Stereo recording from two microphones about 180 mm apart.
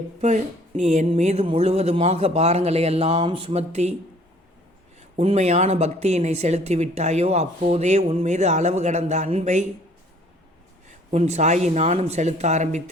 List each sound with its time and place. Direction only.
0.2 s a woman's voice: 40° right (ahead or behind)
4.9 s a woman's voice: 35° right (ahead or behind)
10.8 s a woman's voice: 40° right (ahead or behind)